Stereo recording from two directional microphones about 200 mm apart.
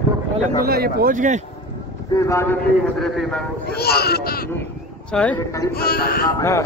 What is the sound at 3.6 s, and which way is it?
Speech, 50° left (ahead or behind).